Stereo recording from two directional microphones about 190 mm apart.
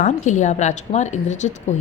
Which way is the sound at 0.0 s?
40° left (ahead or behind).